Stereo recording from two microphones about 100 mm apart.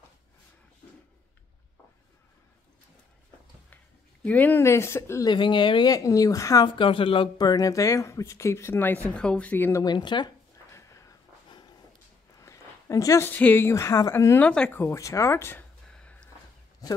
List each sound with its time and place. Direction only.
3.7 s speech: 15° left (ahead or behind)
5.2 s speech: 50° left (ahead or behind)
5.9 s speech: 35° left (ahead or behind)
6.6 s speech: 55° left (ahead or behind)
7.3 s speech: 40° left (ahead or behind); by 9.7 s 15° left (ahead or behind)
9.8 s speech: 50° left (ahead or behind)
10.7 s a sound: 30° left (ahead or behind)
11.5 s dog: 40° left (ahead or behind)
12.4 s a sound: 30° left (ahead or behind)
13.3 s speech: 15° left (ahead or behind)
15.9 s a sound: 10° left (ahead or behind)